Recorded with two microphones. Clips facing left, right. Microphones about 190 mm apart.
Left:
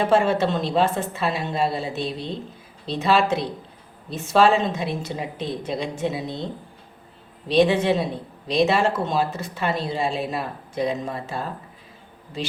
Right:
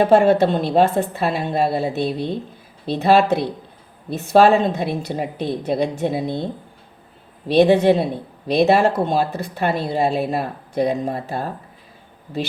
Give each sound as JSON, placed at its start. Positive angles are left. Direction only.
{"t": 0.0, "sound": "speech", "side_deg": -55}